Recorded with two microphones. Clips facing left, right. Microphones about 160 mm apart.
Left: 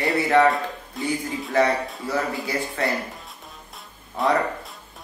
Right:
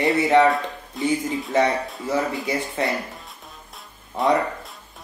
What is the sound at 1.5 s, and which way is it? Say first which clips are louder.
Speech: even; 20° right (ahead or behind).